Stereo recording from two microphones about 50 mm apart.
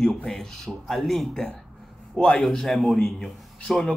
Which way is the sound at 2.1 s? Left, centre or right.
Centre.